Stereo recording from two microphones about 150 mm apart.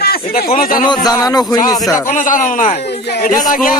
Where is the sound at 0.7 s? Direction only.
30° left (ahead or behind).